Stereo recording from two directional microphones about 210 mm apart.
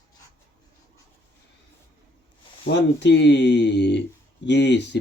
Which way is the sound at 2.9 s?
55° left (ahead or behind).